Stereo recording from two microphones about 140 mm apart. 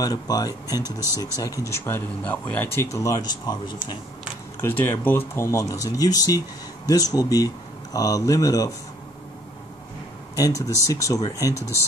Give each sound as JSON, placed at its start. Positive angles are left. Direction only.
{"t": 0.0, "sound": "speech", "side_deg": 25}
{"t": 4.6, "sound": "speech", "side_deg": 20}
{"t": 10.3, "sound": "speech", "side_deg": 25}